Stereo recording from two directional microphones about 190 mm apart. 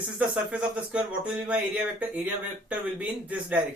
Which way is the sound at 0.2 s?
5° right (ahead or behind).